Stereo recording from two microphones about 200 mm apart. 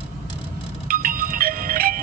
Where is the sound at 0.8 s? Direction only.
45° right (ahead or behind).